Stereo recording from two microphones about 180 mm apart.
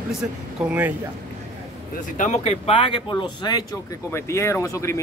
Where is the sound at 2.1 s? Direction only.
40° left (ahead or behind).